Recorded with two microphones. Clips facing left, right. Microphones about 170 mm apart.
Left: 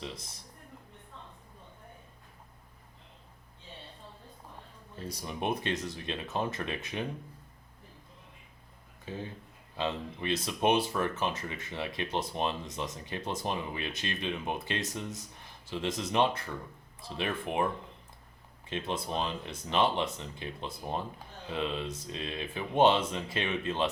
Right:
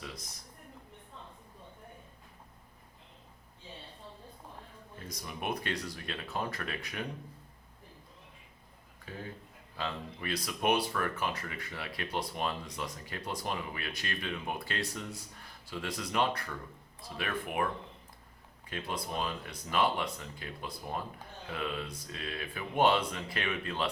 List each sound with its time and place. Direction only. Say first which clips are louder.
0.0 s a man's voice: left 4 dB; 25° left (ahead or behind)
4.9 s speech: left 5 dB; 30° left (ahead or behind)
9.0 s speech: left 4 dB; 25° left (ahead or behind)
18.7 s speech: left 3 dB; 25° left (ahead or behind)